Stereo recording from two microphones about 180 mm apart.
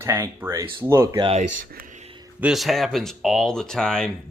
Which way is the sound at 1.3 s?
40° right (ahead or behind).